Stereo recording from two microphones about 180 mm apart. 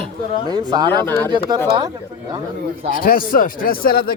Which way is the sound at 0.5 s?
25° right (ahead or behind).